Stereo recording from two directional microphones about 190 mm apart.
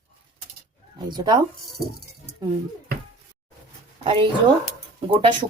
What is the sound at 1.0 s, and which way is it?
Speech, 25° right (ahead or behind).